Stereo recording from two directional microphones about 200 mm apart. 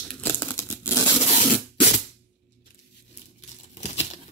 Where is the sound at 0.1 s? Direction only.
10° left (ahead or behind).